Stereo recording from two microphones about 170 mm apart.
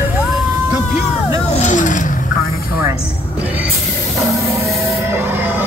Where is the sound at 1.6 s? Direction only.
50° left (ahead or behind).